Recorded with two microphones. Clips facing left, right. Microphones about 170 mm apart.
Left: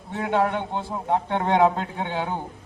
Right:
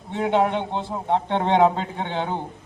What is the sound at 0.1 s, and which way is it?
A man's voice, 20° right (ahead or behind).